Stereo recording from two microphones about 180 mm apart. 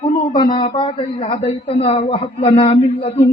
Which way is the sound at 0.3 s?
20° left (ahead or behind).